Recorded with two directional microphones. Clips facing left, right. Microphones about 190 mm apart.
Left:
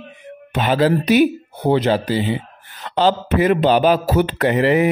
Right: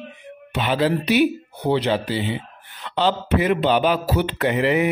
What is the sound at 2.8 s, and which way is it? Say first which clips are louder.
Speech: left 4 dB; 40° left (ahead or behind).